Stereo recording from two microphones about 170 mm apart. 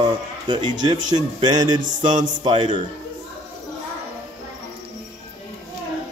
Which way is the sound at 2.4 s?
30° right (ahead or behind).